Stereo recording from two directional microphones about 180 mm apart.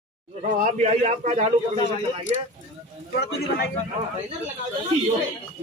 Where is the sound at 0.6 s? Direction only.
40° right (ahead or behind).